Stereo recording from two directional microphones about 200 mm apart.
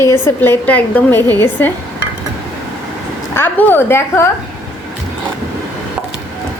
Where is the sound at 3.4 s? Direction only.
10° left (ahead or behind).